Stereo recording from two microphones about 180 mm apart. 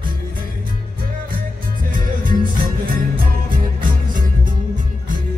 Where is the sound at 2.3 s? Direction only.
50° right (ahead or behind).